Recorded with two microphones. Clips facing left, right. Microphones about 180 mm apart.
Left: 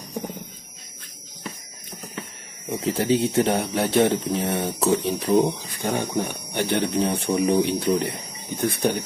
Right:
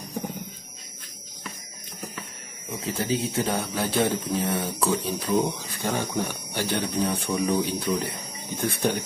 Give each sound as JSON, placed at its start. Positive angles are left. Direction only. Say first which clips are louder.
{"t": 2.7, "sound": "speech", "louder": "left 6 dB", "side_deg": 30}
{"t": 8.5, "sound": "speech", "louder": "left 3 dB", "side_deg": 15}